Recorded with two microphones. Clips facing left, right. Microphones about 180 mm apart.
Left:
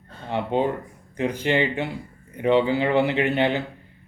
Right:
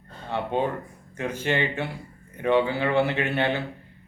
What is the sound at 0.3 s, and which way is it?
Speech, 15° left (ahead or behind).